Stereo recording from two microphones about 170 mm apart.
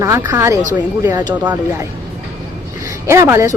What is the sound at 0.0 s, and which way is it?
Speech, 15° right (ahead or behind).